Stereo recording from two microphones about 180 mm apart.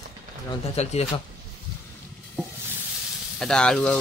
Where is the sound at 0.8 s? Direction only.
35° left (ahead or behind).